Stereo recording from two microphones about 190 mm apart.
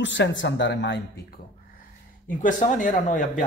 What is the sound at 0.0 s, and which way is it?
Speech, 75° left (ahead or behind).